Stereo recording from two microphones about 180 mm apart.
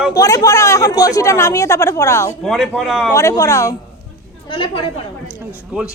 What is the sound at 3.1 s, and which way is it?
Speech, 15° left (ahead or behind).